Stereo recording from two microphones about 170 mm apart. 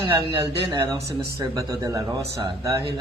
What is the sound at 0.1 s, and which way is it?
Speech, 15° right (ahead or behind).